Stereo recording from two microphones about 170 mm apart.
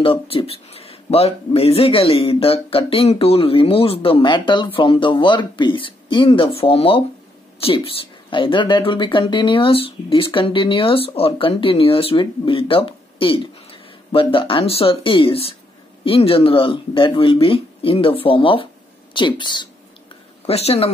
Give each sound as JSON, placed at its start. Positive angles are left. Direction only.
{"t": 0.0, "sound": "speech", "side_deg": 30}
{"t": 20.4, "sound": "speech", "side_deg": 35}